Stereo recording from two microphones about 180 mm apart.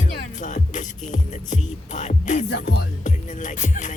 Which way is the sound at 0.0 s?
45° left (ahead or behind).